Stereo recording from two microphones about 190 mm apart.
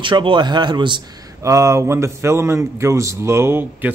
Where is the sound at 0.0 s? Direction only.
25° right (ahead or behind).